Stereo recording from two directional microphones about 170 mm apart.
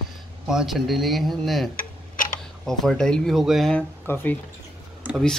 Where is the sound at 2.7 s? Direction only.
5° left (ahead or behind).